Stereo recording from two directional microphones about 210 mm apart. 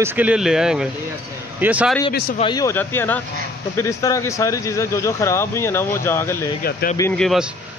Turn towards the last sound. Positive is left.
turn(degrees=0)  # may be behind; listen again after turning